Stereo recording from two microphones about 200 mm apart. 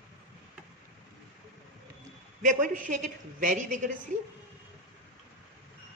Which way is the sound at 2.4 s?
40° right (ahead or behind).